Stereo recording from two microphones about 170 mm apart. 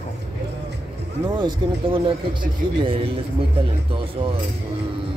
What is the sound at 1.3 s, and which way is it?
A man's voice, 30° right (ahead or behind).